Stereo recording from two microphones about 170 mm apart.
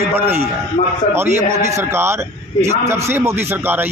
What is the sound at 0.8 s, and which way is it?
Speech, 45° left (ahead or behind).